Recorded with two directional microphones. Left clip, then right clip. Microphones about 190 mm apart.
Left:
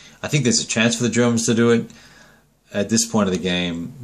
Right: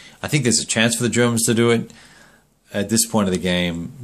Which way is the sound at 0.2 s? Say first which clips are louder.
Even; 30° right (ahead or behind).